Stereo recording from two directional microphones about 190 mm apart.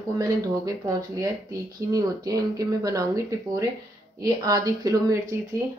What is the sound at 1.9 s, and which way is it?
Speech, 20° right (ahead or behind).